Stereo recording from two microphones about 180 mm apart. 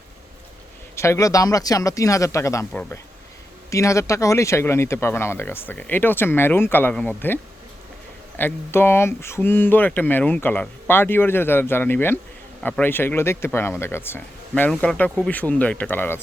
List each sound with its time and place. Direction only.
0.9 s speech: 15° left (ahead or behind)
8.4 s speech: 10° left (ahead or behind)